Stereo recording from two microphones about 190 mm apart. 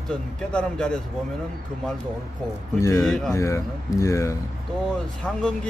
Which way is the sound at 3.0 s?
Centre (ahead or behind).